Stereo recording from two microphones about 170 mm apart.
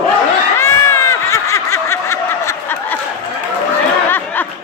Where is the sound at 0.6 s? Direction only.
15° left (ahead or behind).